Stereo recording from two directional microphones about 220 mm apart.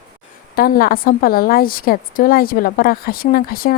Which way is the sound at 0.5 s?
40° left (ahead or behind).